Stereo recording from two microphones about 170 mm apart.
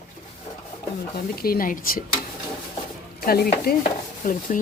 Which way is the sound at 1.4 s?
60° left (ahead or behind).